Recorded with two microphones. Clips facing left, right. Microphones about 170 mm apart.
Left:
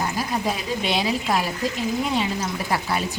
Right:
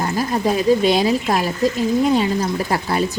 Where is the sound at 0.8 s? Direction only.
40° right (ahead or behind).